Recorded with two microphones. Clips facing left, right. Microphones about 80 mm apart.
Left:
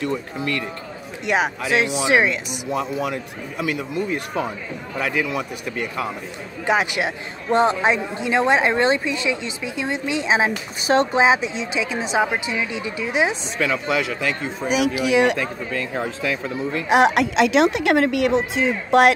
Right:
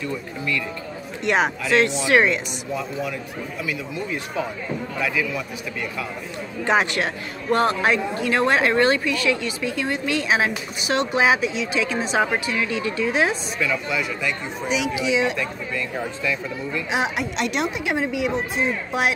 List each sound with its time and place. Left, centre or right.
0.0 s speech: left
1.2 s a woman's voice: centre
2.7 s speech: left
6.6 s a woman's voice: centre
7.5 s speech: left
10.9 s speech: left
11.7 s a woman's voice: centre
13.6 s speech: left
14.7 s speech: left
16.9 s speech: left